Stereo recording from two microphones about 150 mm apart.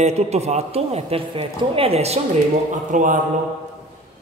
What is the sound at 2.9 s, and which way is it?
Speech, 55° right (ahead or behind).